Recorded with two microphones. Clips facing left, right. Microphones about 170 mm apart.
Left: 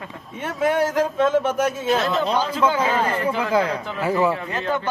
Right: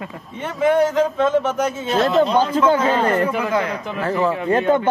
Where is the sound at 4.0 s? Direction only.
10° left (ahead or behind).